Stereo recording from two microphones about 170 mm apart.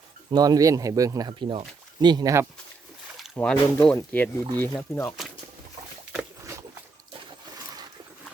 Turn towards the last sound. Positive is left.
turn(degrees=-25)  # may be behind; listen again after turning